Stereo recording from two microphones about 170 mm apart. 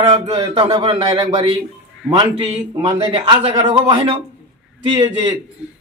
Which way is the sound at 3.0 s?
30° right (ahead or behind).